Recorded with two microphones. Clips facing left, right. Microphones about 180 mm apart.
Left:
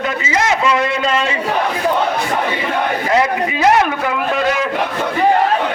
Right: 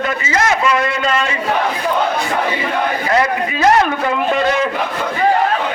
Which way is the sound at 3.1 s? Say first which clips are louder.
Left 1 dB; 15° left (ahead or behind).